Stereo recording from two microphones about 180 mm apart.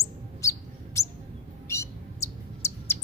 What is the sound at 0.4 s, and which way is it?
Bird, 15° left (ahead or behind).